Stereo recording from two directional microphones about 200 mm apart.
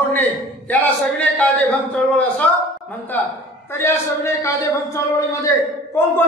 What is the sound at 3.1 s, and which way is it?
A man's voice, 10° left (ahead or behind).